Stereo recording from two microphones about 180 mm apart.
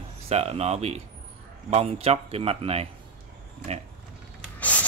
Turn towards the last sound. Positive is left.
turn(degrees=10)  # may be behind; listen again after turning